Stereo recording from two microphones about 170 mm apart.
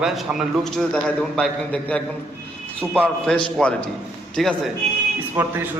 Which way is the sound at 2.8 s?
15° right (ahead or behind).